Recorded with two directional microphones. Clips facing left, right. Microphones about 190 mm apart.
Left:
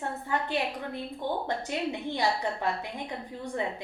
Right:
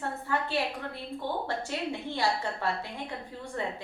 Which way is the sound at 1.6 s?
15° left (ahead or behind).